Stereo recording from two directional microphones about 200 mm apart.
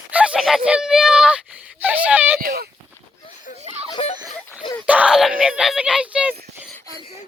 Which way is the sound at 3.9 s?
30° left (ahead or behind).